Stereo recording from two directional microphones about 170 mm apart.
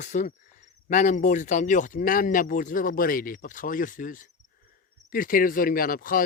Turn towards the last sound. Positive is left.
turn(degrees=55)  # may be behind; listen again after turning